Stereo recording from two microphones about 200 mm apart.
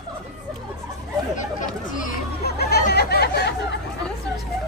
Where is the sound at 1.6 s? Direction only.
40° left (ahead or behind).